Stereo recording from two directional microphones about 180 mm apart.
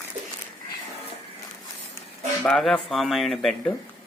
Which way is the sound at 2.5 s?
5° left (ahead or behind).